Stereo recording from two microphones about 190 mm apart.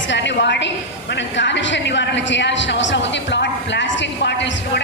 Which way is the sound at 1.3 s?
70° left (ahead or behind).